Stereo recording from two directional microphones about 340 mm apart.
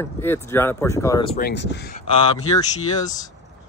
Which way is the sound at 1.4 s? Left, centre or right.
Left.